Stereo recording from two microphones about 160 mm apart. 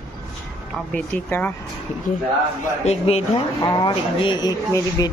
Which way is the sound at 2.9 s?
40° left (ahead or behind).